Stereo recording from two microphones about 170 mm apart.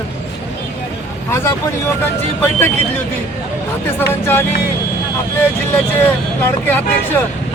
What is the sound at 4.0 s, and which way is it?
Speech, 15° left (ahead or behind).